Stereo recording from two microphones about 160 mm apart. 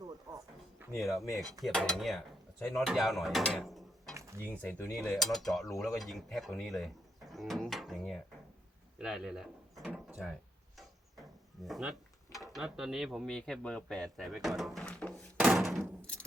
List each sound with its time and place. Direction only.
0.0 s a sound: 25° right (ahead or behind)
0.9 s speech: centre (ahead or behind)
4.1 s a sound: 20° right (ahead or behind)
4.6 s cutlery: 10° left (ahead or behind)
4.9 s speech: centre (ahead or behind)
10.8 s a sound: centre (ahead or behind)
12.5 s speech: 5° right (ahead or behind)
14.3 s drawer open or close: centre (ahead or behind)
15.4 s door: centre (ahead or behind)